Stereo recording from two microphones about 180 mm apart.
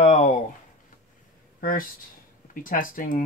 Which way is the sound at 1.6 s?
50° left (ahead or behind).